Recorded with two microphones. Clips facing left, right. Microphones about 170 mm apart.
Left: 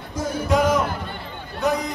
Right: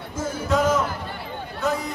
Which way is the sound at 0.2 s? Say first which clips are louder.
Left 2 dB; 15° left (ahead or behind).